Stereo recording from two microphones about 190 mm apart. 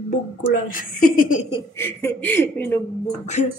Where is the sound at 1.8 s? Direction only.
10° left (ahead or behind).